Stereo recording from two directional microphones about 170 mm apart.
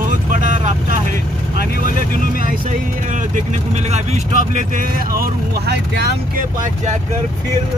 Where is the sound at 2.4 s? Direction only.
50° right (ahead or behind); by 6.2 s 75° right (ahead or behind).